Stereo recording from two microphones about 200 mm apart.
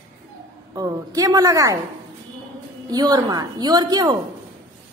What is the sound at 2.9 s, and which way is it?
A woman's voice, 20° right (ahead or behind).